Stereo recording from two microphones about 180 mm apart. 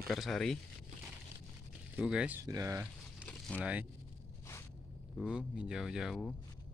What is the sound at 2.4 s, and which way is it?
Speech, 15° right (ahead or behind).